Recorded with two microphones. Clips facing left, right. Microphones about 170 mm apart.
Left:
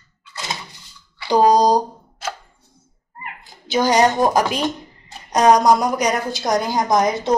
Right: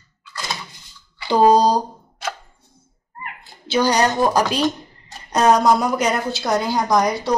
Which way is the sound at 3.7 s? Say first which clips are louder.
Left 2 dB; 20° left (ahead or behind).